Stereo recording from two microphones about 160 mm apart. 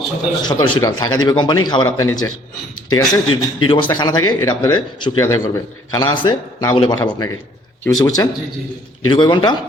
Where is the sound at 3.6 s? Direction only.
30° left (ahead or behind).